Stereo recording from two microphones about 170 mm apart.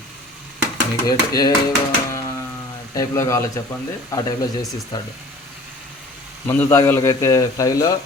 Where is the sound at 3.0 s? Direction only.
15° left (ahead or behind).